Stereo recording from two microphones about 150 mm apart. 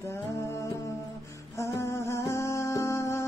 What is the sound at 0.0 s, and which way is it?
Music, 15° left (ahead or behind).